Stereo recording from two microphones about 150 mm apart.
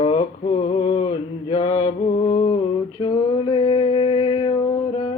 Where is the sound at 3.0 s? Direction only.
35° left (ahead or behind).